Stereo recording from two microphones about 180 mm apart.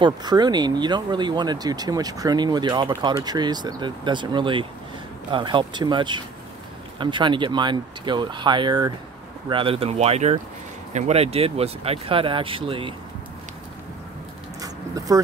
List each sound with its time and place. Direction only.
0.0 s speech: 25° right (ahead or behind)
14.6 s dog: 20° right (ahead or behind)